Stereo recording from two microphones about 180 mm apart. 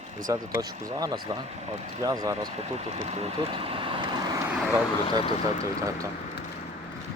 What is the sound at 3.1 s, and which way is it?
Vehicle, 35° right (ahead or behind).